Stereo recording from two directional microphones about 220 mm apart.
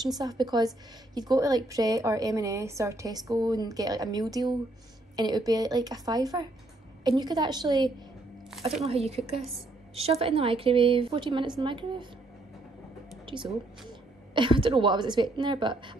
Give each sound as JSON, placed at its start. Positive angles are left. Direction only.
{"t": 0.2, "sound": "a woman's voice", "side_deg": -20}
{"t": 14.3, "sound": "speech", "side_deg": -20}